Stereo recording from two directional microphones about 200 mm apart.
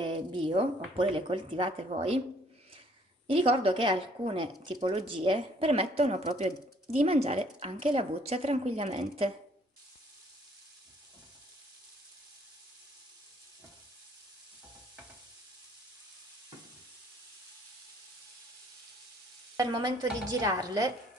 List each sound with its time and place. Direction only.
0.0 s a sound: 25° right (ahead or behind)
0.9 s a woman's voice: 25° right (ahead or behind)
3.3 s a woman's voice: 25° right (ahead or behind)
19.5 s a woman's voice: 20° right (ahead or behind)